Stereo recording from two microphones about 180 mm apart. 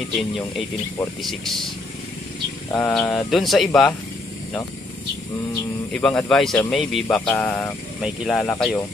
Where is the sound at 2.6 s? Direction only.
15° left (ahead or behind).